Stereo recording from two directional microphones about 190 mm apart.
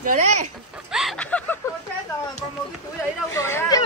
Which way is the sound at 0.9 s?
Centre (ahead or behind).